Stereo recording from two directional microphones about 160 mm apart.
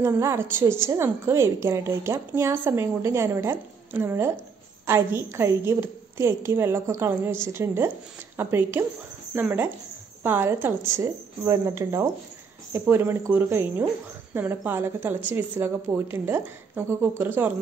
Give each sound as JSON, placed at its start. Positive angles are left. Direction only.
{"t": 0.0, "sound": "a woman's voice", "side_deg": -15}